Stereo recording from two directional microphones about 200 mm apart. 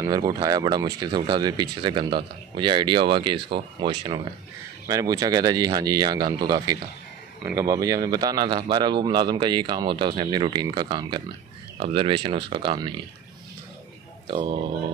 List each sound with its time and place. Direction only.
0.0 s speech: 20° right (ahead or behind)
14.2 s speech: 25° right (ahead or behind)